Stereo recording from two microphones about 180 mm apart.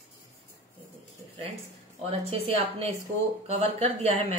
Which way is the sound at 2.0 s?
35° right (ahead or behind).